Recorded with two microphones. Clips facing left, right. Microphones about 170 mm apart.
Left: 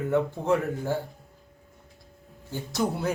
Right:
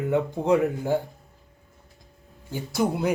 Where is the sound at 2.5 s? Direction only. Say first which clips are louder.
Right 3 dB; 10° right (ahead or behind).